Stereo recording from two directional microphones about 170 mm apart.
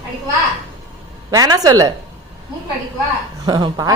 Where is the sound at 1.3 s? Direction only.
20° right (ahead or behind).